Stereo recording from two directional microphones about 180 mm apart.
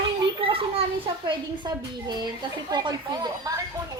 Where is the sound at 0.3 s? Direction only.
30° right (ahead or behind).